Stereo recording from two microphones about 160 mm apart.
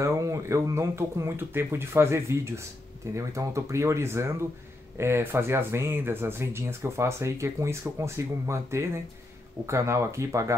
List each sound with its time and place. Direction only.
0.0 s speech: 20° right (ahead or behind)